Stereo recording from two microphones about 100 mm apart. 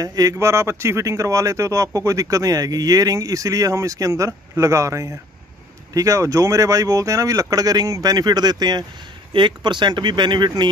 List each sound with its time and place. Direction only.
0.0 s speech: 40° right (ahead or behind)